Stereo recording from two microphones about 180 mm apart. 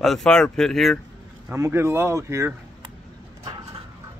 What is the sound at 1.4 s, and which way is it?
Speech, 15° right (ahead or behind).